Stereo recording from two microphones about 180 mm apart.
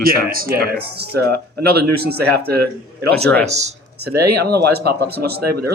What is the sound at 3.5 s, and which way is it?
Speech, 40° right (ahead or behind).